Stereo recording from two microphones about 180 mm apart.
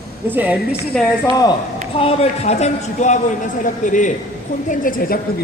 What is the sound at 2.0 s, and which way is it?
A man's voice, 35° left (ahead or behind).